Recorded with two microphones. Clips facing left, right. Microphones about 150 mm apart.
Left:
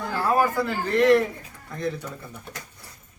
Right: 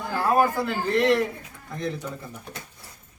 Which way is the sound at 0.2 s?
20° right (ahead or behind).